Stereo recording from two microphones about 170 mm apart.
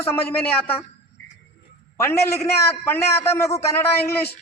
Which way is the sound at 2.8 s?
15° left (ahead or behind).